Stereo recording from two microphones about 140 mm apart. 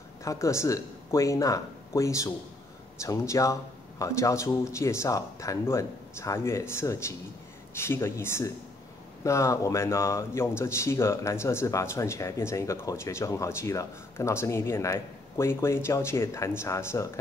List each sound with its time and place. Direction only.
0.2 s speech: 20° left (ahead or behind)